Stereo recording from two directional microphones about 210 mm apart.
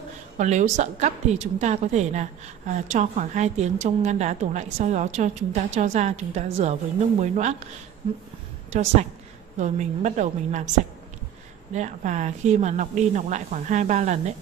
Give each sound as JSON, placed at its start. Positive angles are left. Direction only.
{"t": 0.4, "sound": "a woman's voice", "side_deg": -35}
{"t": 11.7, "sound": "a woman's voice", "side_deg": -35}